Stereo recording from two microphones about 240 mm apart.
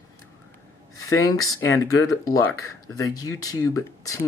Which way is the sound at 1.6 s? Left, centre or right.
Left.